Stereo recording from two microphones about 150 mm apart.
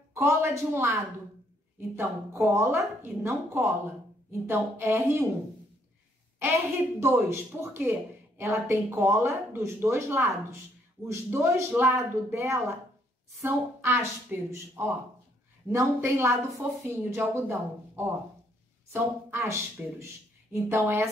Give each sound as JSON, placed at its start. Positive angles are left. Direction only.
{"t": 0.1, "sound": "speech", "side_deg": -20}
{"t": 2.0, "sound": "speech", "side_deg": -15}
{"t": 6.4, "sound": "speech", "side_deg": -15}